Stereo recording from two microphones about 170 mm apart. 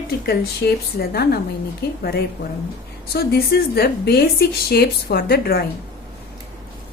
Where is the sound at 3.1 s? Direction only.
65° left (ahead or behind).